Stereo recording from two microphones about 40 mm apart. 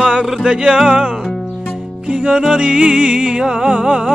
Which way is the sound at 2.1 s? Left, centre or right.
Right.